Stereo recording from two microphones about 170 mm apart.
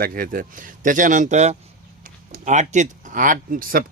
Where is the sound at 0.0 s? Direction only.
55° right (ahead or behind).